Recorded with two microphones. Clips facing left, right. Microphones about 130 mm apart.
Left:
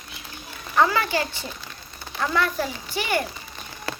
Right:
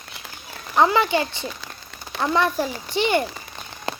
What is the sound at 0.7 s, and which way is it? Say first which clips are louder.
Speech: right 3 dB; 20° right (ahead or behind).